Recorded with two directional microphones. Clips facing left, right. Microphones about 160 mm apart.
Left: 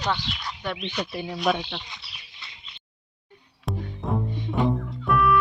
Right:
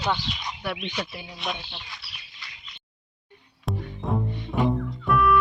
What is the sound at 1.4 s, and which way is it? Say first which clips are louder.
Speech: left 9 dB; 90° left.